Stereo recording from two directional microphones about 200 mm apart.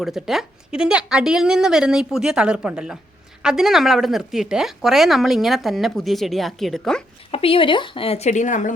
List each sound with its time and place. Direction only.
0.0 s speech: centre (ahead or behind)
7.3 s a woman's voice: 30° left (ahead or behind)